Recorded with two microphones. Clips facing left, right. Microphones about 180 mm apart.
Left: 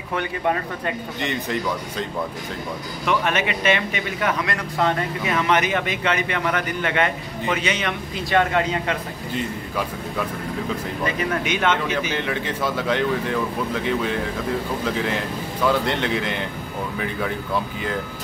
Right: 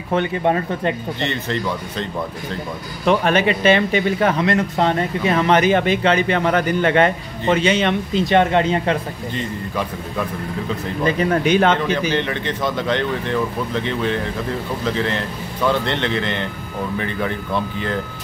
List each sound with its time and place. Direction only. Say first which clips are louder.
0.1 s speech: right 5 dB; 25° right (ahead or behind)
1.3 s speech: right 2 dB; 10° left (ahead or behind)
3.1 s speech: right 6 dB; 35° right (ahead or behind)
9.3 s speech: even; 5° left (ahead or behind)
11.1 s speech: right 8 dB; 35° right (ahead or behind)
12.1 s speech: right 4 dB; 5° left (ahead or behind)